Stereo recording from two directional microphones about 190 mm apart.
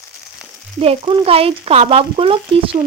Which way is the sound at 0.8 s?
30° right (ahead or behind).